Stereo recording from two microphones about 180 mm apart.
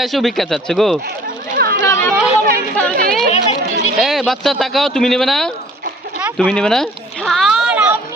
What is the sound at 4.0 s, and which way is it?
Speech, centre (ahead or behind).